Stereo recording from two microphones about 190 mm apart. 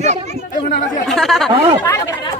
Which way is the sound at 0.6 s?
40° left (ahead or behind).